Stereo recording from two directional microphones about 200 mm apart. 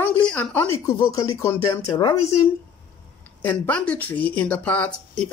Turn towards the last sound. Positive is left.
turn(degrees=5)  # may be behind; listen again after turning